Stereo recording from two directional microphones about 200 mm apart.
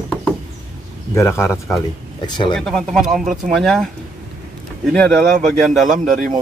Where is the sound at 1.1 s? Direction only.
15° left (ahead or behind).